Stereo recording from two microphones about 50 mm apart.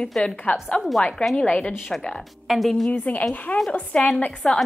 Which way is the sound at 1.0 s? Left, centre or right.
Centre.